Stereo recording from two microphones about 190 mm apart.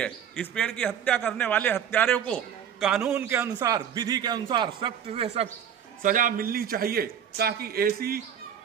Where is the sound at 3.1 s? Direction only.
15° right (ahead or behind); by 5.4 s 30° right (ahead or behind).